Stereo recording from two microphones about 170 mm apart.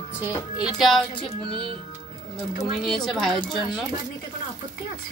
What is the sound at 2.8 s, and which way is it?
Speech, centre (ahead or behind).